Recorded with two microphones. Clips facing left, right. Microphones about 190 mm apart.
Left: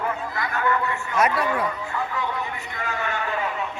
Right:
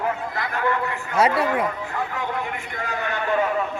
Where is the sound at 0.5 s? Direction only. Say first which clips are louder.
Even; 30° right (ahead or behind).